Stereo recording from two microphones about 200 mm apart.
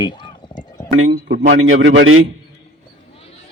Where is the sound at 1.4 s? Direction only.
75° right (ahead or behind).